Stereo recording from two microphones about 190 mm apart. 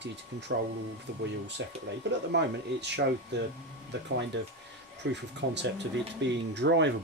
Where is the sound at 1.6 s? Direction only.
70° right (ahead or behind).